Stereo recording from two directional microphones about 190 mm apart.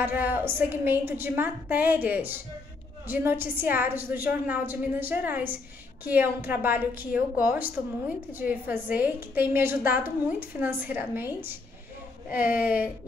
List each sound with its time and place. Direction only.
0.0 s a woman's voice: 10° right (ahead or behind)